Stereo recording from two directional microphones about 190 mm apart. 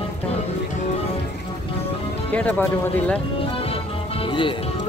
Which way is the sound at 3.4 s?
30° left (ahead or behind).